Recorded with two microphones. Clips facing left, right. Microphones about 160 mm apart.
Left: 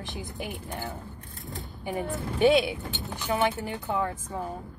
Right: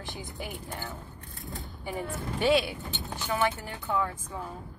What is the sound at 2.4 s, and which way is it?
Speech, 20° left (ahead or behind).